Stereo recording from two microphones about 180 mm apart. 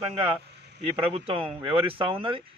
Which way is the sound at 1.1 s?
30° right (ahead or behind).